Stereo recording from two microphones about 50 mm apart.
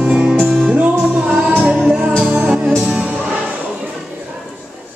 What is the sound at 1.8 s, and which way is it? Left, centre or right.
Music, centre.